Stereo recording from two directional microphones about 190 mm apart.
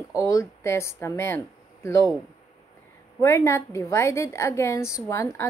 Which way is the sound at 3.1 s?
15° left (ahead or behind).